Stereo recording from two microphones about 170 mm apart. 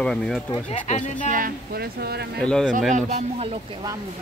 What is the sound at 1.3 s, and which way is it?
Speech, 60° right (ahead or behind).